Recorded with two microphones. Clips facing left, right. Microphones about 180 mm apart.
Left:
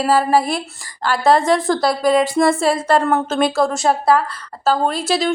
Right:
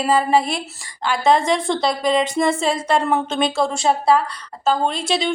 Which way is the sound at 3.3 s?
5° left (ahead or behind).